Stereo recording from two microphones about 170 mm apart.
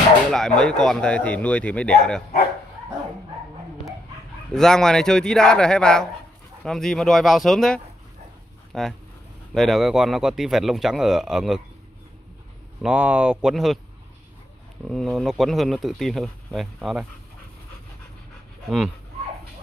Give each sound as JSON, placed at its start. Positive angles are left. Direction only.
{"t": 0.3, "sound": "speech", "side_deg": 5}
{"t": 4.5, "sound": "speech", "side_deg": 5}
{"t": 12.8, "sound": "speech", "side_deg": -10}
{"t": 14.9, "sound": "speech", "side_deg": 0}